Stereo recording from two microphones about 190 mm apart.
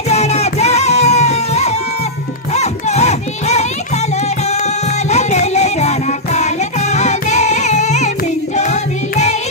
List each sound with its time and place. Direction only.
0.1 s music: 35° left (ahead or behind)
5.1 s music: 35° left (ahead or behind)
8.5 s choir: 35° left (ahead or behind)